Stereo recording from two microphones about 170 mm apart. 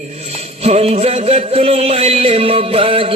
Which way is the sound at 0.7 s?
35° right (ahead or behind).